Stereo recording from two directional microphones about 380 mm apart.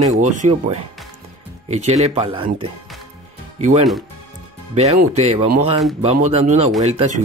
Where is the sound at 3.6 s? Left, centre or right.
Centre.